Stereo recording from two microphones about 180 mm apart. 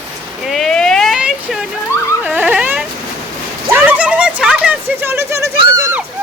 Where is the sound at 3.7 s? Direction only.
10° right (ahead or behind).